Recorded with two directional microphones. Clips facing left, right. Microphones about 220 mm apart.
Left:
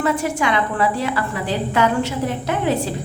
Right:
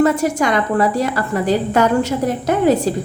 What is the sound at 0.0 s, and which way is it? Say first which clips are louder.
A woman's voice: right 5 dB; 40° right (ahead or behind).